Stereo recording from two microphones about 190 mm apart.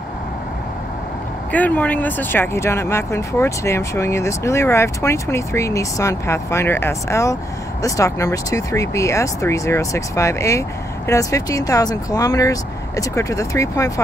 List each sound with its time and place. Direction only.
1.5 s speech: 10° left (ahead or behind)